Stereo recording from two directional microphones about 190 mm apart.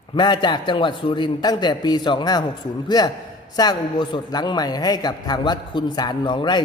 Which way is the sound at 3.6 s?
20° left (ahead or behind).